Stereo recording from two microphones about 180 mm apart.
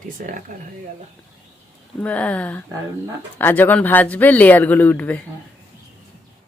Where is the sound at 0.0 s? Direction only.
45° right (ahead or behind).